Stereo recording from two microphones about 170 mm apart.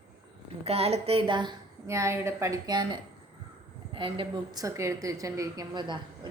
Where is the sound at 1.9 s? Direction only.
15° right (ahead or behind).